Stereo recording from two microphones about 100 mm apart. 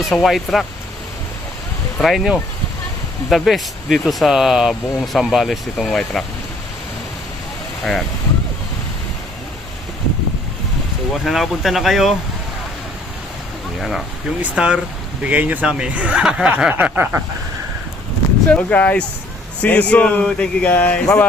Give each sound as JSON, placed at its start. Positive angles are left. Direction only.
{"t": 0.0, "sound": "speech", "side_deg": 0}
{"t": 2.0, "sound": "speech", "side_deg": 0}
{"t": 11.1, "sound": "speech", "side_deg": 0}
{"t": 14.5, "sound": "speech", "side_deg": -10}
{"t": 16.7, "sound": "snicker", "side_deg": -15}
{"t": 18.4, "sound": "speech", "side_deg": 15}